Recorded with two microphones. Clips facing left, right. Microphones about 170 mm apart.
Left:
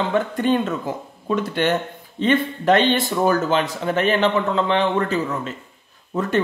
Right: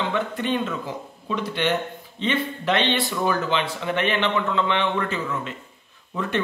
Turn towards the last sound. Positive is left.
turn(degrees=40)  # may be behind; listen again after turning